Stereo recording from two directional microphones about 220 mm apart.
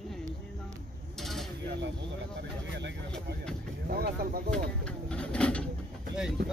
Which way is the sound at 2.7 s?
55° right (ahead or behind).